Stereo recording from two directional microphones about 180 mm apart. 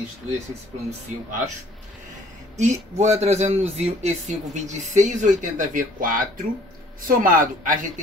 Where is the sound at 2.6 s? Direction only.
40° right (ahead or behind).